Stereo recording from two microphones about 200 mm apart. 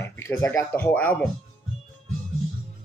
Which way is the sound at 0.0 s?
15° left (ahead or behind).